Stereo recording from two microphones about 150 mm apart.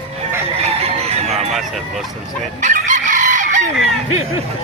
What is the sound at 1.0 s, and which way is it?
Chicken, 45° right (ahead or behind).